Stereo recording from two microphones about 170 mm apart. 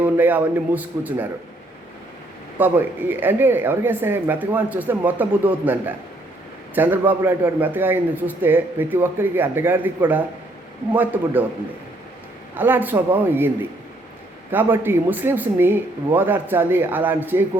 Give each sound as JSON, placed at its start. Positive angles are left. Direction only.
{"t": 0.0, "sound": "a man's voice", "side_deg": -10}
{"t": 2.6, "sound": "a man's voice", "side_deg": -10}
{"t": 12.5, "sound": "a man's voice", "side_deg": -10}
{"t": 14.5, "sound": "a man's voice", "side_deg": -10}